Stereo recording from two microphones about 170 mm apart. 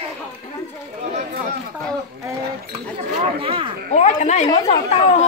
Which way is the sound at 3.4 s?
30° right (ahead or behind).